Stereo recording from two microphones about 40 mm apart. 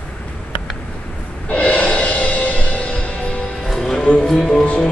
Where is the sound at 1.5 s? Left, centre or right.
Left.